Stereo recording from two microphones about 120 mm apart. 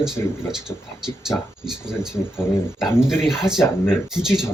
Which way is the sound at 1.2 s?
5° right (ahead or behind).